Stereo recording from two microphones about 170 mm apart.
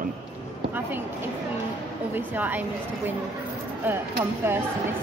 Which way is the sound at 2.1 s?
10° right (ahead or behind).